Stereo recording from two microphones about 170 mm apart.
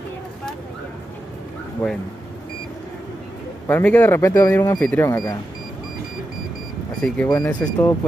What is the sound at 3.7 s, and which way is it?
Speech, 10° left (ahead or behind).